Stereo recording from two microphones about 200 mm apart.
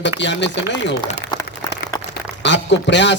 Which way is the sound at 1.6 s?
20° left (ahead or behind).